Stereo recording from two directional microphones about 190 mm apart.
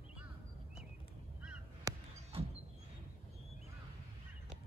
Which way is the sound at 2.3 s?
30° right (ahead or behind).